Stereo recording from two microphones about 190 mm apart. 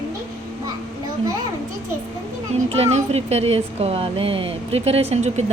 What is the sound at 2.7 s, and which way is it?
Speech, 35° right (ahead or behind).